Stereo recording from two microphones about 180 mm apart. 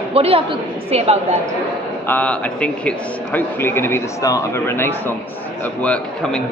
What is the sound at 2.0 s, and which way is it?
A man's voice, 5° left (ahead or behind).